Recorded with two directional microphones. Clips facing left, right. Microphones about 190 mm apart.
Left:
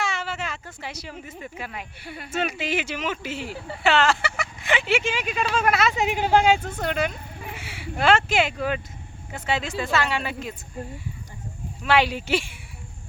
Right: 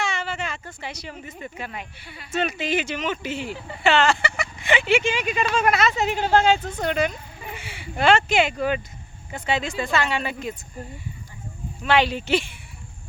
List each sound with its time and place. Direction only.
0.0 s speech: 5° left (ahead or behind)
2.0 s speech: 55° left (ahead or behind)
2.3 s speech: 5° left (ahead or behind)
11.8 s speech: 5° left (ahead or behind)